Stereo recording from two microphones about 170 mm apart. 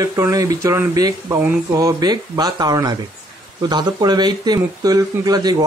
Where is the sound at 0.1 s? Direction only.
20° right (ahead or behind).